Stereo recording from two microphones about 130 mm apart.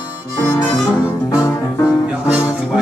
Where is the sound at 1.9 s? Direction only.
5° right (ahead or behind).